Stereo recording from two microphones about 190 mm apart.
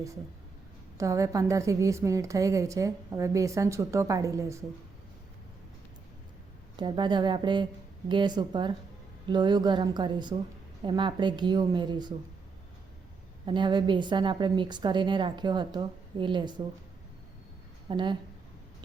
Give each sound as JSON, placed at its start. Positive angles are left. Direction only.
{"t": 0.9, "sound": "a woman's voice", "side_deg": -15}
{"t": 6.7, "sound": "a woman's voice", "side_deg": -25}
{"t": 13.4, "sound": "a woman's voice", "side_deg": -25}
{"t": 17.8, "sound": "a woman's voice", "side_deg": -25}